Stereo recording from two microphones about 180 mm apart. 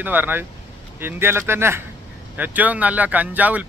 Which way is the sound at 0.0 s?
10° right (ahead or behind).